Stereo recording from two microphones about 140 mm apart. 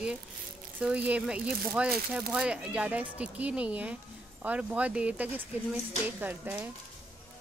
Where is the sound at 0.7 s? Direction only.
10° right (ahead or behind).